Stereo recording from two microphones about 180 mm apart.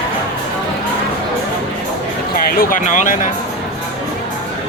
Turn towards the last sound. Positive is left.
turn(degrees=45)  # may be behind; listen again after turning